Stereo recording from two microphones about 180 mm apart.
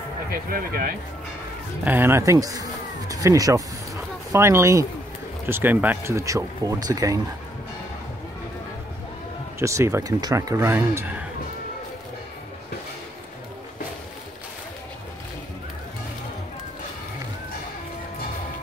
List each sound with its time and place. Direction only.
0.3 s speech: 55° right (ahead or behind)
1.9 s speech: 10° right (ahead or behind)
9.6 s speech: 15° right (ahead or behind)